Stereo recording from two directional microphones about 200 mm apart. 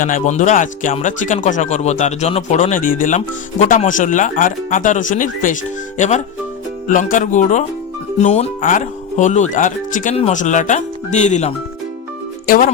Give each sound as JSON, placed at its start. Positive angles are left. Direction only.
{"t": 0.0, "sound": "speech", "side_deg": 40}